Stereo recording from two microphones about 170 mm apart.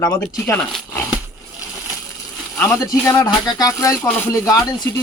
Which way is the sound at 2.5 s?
15° left (ahead or behind).